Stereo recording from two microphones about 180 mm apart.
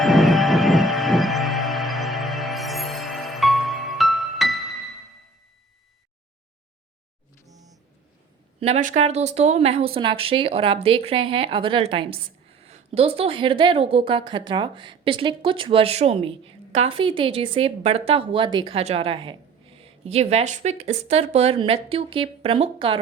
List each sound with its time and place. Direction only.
0.0 s music: centre (ahead or behind)
8.6 s speech: 40° right (ahead or behind)